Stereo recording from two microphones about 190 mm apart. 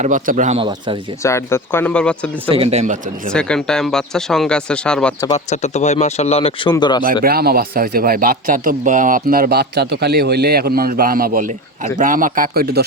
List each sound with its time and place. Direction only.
0.0 s speech: 40° right (ahead or behind)
1.2 s speech: 15° left (ahead or behind)
2.5 s speech: 30° right (ahead or behind)
3.3 s speech: 5° left (ahead or behind)
5.3 s speech: 35° left (ahead or behind)
7.0 s a man's voice: 45° right (ahead or behind)